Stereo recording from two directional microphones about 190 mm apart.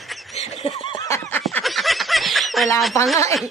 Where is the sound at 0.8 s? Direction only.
25° left (ahead or behind).